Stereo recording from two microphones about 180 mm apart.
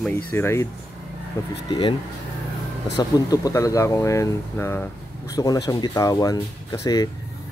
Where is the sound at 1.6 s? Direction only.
25° left (ahead or behind).